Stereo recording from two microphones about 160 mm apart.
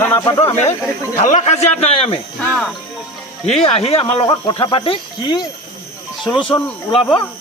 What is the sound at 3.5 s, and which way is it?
Speech, 40° left (ahead or behind).